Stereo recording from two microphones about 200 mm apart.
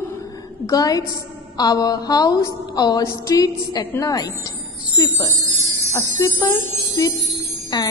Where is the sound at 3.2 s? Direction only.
15° left (ahead or behind).